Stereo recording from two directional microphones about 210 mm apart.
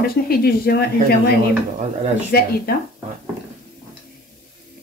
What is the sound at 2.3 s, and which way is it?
Speech, 50° left (ahead or behind).